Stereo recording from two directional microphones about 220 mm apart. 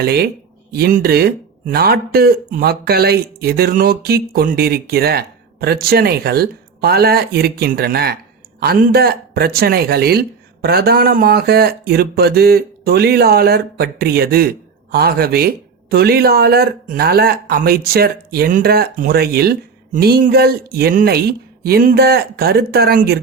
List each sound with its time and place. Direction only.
0.0 s speech: 45° right (ahead or behind)